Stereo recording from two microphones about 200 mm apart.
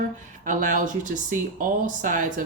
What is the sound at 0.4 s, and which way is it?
Speech, 40° right (ahead or behind).